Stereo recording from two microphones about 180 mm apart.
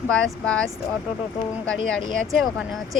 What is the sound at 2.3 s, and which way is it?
Speech, centre (ahead or behind).